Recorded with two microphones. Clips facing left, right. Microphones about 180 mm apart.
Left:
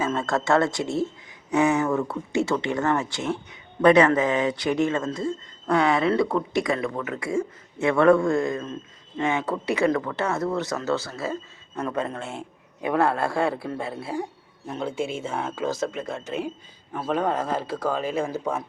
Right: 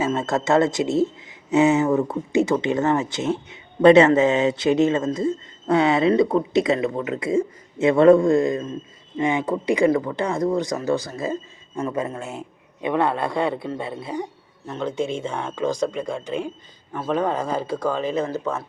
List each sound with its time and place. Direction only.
0.0 s speech: 20° right (ahead or behind)
12.8 s speech: 5° left (ahead or behind)